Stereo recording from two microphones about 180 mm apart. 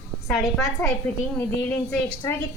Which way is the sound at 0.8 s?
10° left (ahead or behind).